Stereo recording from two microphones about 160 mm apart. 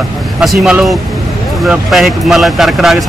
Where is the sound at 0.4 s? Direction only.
Centre (ahead or behind).